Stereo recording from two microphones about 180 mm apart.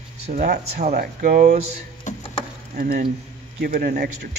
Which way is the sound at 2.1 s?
45° left (ahead or behind).